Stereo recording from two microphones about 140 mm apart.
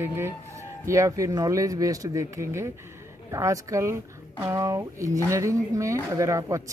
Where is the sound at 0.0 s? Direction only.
15° right (ahead or behind).